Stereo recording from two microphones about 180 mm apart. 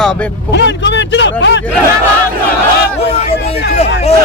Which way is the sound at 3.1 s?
35° left (ahead or behind).